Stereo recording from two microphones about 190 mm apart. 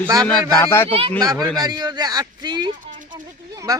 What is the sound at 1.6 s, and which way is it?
A man's voice, 20° right (ahead or behind).